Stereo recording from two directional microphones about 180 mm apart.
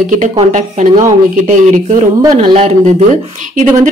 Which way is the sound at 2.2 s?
35° right (ahead or behind).